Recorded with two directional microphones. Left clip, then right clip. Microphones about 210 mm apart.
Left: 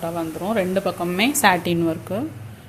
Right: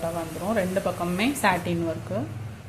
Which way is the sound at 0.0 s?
50° left (ahead or behind).